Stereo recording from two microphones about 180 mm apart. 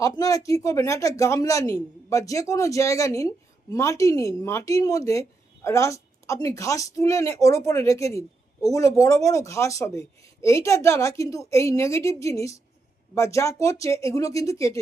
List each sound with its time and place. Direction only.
0.0 s speech: 20° left (ahead or behind)